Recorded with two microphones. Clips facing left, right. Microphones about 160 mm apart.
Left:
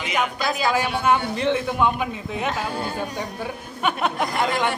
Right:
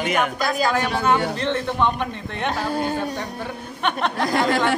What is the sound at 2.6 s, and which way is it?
Speech, 40° right (ahead or behind).